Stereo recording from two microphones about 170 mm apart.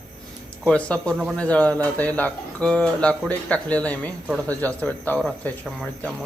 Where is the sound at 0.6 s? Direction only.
5° left (ahead or behind).